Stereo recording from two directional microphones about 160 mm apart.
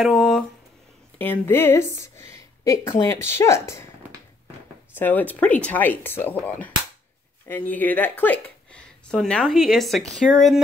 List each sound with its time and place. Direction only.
0.0 s speech: centre (ahead or behind)
1.1 s speech: 10° left (ahead or behind)
4.9 s speech: 10° left (ahead or behind)
7.4 s speech: 10° left (ahead or behind)